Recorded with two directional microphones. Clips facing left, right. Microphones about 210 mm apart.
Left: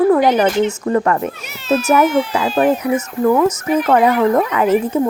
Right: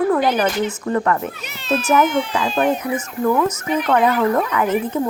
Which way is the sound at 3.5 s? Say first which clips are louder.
Left 5 dB; 5° left (ahead or behind).